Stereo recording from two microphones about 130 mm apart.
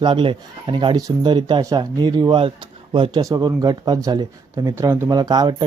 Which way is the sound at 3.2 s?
25° right (ahead or behind).